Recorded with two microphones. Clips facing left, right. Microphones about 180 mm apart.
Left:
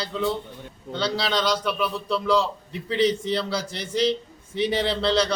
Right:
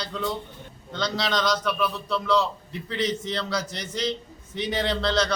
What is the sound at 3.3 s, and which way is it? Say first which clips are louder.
Speech: left 3 dB; 10° left (ahead or behind).